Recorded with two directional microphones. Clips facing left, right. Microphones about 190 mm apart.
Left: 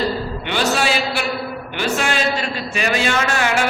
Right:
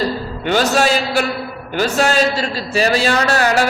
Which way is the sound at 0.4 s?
40° right (ahead or behind).